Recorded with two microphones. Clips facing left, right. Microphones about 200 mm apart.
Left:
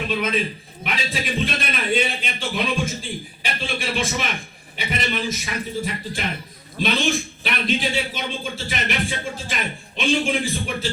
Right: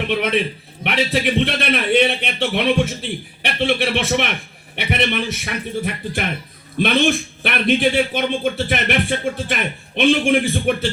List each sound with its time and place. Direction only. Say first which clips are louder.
0.1 s a man's voice: right 4 dB; 70° right (ahead or behind)